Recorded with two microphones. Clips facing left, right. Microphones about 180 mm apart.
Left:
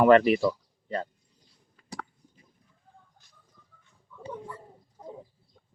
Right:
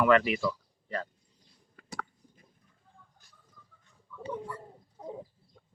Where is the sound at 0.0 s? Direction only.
40° left (ahead or behind).